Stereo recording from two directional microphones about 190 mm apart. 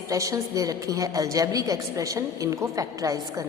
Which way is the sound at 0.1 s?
15° right (ahead or behind).